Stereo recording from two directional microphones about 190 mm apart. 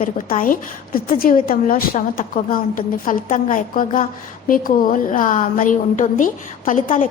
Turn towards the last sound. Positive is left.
turn(degrees=45)  # may be behind; listen again after turning